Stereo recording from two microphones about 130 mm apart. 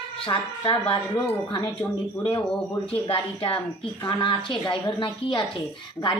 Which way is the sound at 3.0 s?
45° left (ahead or behind).